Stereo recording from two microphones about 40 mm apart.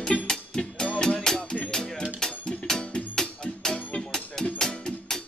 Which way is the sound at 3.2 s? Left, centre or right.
Centre.